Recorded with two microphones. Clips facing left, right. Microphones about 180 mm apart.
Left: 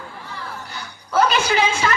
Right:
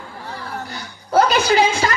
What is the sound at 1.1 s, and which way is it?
Speech, 40° right (ahead or behind).